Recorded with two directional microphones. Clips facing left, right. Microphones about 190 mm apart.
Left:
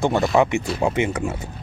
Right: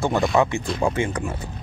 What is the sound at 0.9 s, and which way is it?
Speech, 20° left (ahead or behind).